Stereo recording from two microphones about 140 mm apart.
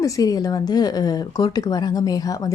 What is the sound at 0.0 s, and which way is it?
Speech, 25° left (ahead or behind).